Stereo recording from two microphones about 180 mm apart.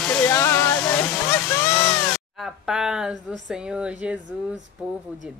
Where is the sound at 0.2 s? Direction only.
15° left (ahead or behind).